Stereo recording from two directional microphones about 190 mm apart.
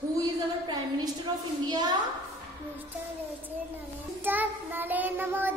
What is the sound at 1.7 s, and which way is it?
Speech, 20° right (ahead or behind).